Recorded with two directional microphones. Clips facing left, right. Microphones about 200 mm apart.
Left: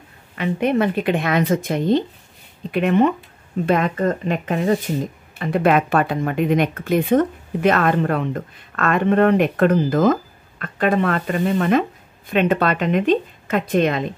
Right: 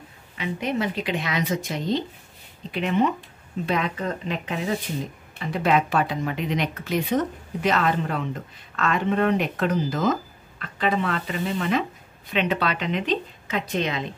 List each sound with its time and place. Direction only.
0.4 s speech: 55° left (ahead or behind)